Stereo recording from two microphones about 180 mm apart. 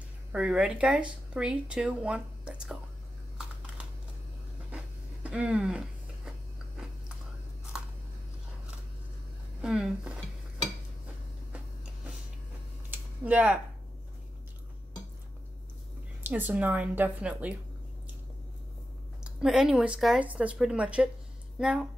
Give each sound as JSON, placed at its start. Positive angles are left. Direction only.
{"t": 0.3, "sound": "speech", "side_deg": -5}
{"t": 4.6, "sound": "a sound", "side_deg": -5}
{"t": 9.6, "sound": "speech", "side_deg": -5}
{"t": 12.9, "sound": "a sound", "side_deg": -10}
{"t": 16.2, "sound": "a woman's voice", "side_deg": -10}
{"t": 19.2, "sound": "speech", "side_deg": -5}